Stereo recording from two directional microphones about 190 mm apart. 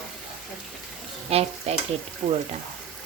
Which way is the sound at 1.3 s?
30° right (ahead or behind).